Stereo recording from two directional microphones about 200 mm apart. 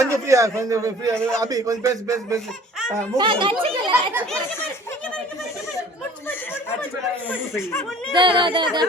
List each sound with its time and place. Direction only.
0.0 s a man's voice: 15° right (ahead or behind)
1.1 s a man's voice: 5° left (ahead or behind)
1.4 s a man's voice: 15° right (ahead or behind)
7.5 s speech: 15° left (ahead or behind)
8.1 s speech: 25° right (ahead or behind)